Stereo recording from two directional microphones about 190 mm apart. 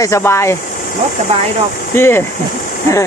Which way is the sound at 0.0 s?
15° left (ahead or behind).